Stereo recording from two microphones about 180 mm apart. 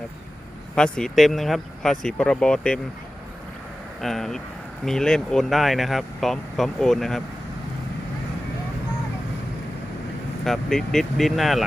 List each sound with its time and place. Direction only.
0.8 s speech: 5° left (ahead or behind)
4.0 s speech: centre (ahead or behind)
10.4 s speech: centre (ahead or behind)